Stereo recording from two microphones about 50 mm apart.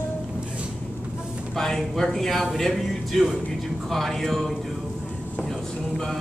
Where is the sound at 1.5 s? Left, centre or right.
Centre.